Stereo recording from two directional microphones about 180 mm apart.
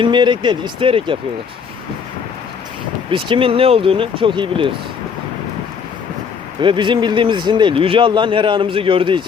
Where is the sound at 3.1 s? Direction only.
30° right (ahead or behind).